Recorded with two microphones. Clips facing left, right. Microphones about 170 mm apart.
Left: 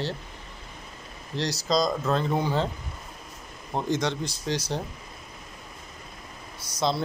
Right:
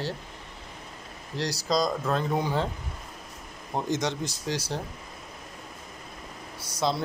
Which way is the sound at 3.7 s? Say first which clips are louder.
Left 1 dB; 15° right (ahead or behind).